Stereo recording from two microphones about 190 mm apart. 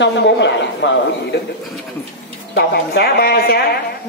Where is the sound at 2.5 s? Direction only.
60° left (ahead or behind).